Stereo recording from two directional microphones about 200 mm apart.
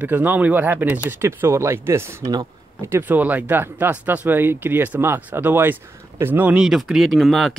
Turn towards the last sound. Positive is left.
turn(degrees=0)  # may be behind; listen again after turning